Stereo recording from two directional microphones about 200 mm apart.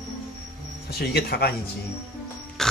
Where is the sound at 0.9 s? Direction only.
50° left (ahead or behind).